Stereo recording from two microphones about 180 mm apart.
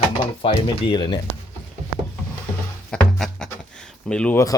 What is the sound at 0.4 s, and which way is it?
Speech, 25° left (ahead or behind).